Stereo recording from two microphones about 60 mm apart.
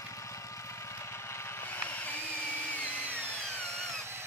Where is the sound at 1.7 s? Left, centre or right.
Left.